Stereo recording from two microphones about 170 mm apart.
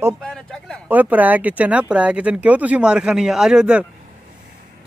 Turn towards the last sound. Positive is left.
turn(degrees=-5)  # may be behind; listen again after turning